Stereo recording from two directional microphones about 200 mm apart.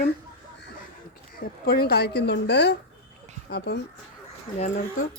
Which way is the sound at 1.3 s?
50° left (ahead or behind).